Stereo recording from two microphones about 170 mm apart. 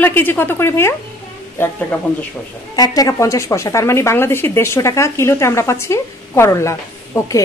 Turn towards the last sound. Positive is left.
turn(degrees=15)  # may be behind; listen again after turning